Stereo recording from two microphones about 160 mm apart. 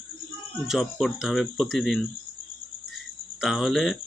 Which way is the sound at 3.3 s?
Centre (ahead or behind).